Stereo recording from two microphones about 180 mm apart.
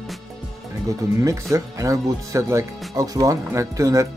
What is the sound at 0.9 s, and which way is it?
Speech, 15° right (ahead or behind).